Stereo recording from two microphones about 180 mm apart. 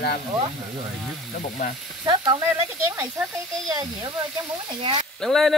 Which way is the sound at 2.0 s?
20° right (ahead or behind).